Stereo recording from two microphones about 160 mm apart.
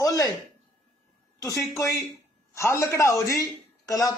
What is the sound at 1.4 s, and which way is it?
A man's voice, 20° left (ahead or behind).